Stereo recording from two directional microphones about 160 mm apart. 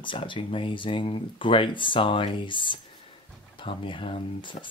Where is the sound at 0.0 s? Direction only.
30° left (ahead or behind).